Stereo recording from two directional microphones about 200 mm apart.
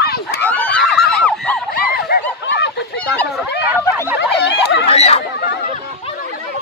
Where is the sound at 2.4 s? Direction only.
60° left (ahead or behind).